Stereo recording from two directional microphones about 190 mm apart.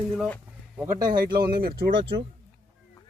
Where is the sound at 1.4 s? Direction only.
55° right (ahead or behind).